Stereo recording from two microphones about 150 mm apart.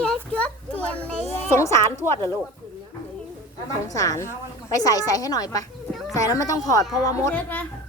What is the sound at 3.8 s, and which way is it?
Speech, 20° left (ahead or behind).